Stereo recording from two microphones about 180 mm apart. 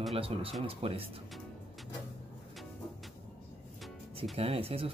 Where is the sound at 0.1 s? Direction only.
30° right (ahead or behind).